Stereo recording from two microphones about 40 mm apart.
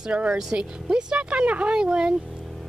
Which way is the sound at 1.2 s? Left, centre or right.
Right.